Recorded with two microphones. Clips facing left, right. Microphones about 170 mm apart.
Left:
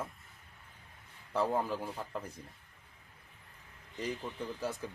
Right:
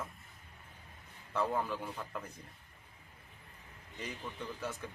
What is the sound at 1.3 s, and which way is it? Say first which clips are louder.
Speech: left 2 dB; 35° left (ahead or behind).